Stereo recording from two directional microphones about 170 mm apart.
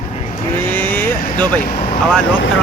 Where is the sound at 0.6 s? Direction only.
10° left (ahead or behind).